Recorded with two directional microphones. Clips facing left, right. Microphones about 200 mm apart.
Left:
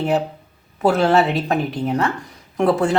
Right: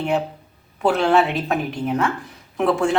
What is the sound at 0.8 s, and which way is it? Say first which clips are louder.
Speech: left 2 dB; centre (ahead or behind).